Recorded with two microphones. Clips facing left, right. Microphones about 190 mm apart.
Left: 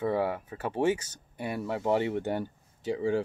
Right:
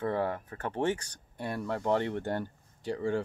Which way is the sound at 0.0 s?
10° left (ahead or behind).